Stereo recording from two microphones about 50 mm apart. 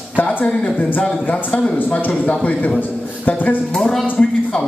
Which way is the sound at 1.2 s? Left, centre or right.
Left.